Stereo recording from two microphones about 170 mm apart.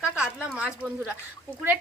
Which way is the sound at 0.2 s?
5° right (ahead or behind).